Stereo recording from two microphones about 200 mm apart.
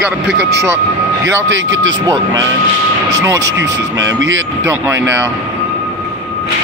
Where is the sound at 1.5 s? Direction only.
70° right (ahead or behind).